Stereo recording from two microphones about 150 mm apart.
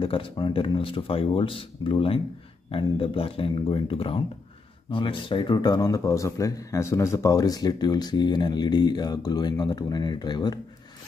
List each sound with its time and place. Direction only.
0.0 s a man's voice: 35° left (ahead or behind)